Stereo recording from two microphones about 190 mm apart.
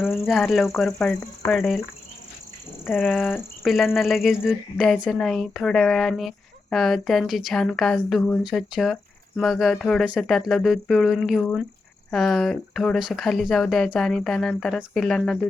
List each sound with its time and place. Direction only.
0.3 s speech: centre (ahead or behind)
3.2 s speech: 10° left (ahead or behind)
3.6 s speech: centre (ahead or behind)